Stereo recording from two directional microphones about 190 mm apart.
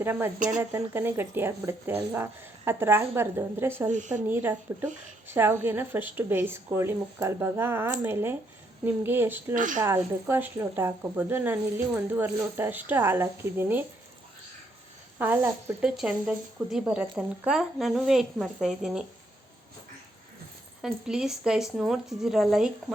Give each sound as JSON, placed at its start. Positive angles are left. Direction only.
{"t": 0.0, "sound": "speech", "side_deg": -10}
{"t": 3.9, "sound": "speech", "side_deg": -40}
{"t": 4.3, "sound": "speech", "side_deg": -10}
{"t": 9.6, "sound": "a woman's voice", "side_deg": -45}
{"t": 9.8, "sound": "speech", "side_deg": -15}
{"t": 15.2, "sound": "speech", "side_deg": -10}
{"t": 20.8, "sound": "speech", "side_deg": -5}